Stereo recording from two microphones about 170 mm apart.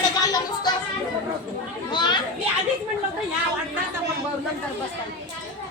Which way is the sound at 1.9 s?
25° left (ahead or behind).